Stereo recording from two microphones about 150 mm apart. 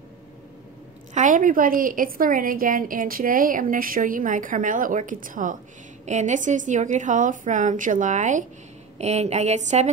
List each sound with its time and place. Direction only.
1.1 s a woman's voice: 60° right (ahead or behind)